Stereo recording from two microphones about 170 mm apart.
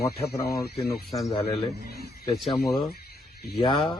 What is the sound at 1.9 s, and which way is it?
Speech, 70° left (ahead or behind).